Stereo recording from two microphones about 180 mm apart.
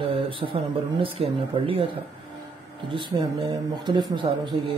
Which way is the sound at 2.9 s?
30° right (ahead or behind).